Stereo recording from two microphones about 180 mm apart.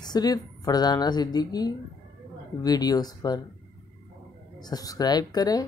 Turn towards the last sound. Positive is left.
turn(degrees=20)  # may be behind; listen again after turning